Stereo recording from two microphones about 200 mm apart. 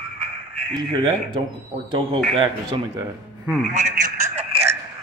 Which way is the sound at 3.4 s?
5° left (ahead or behind).